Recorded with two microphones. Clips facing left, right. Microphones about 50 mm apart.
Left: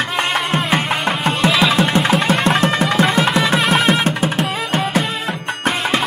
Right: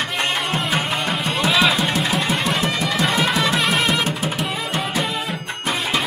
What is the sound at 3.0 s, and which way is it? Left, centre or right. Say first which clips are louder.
Music: left 3 dB; centre.